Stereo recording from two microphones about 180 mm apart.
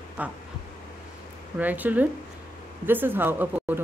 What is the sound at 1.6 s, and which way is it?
Speech, 10° right (ahead or behind).